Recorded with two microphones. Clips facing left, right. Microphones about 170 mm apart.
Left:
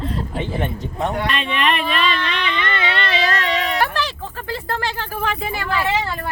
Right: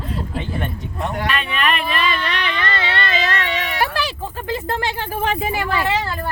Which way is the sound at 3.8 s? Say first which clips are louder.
Even; 10° right (ahead or behind).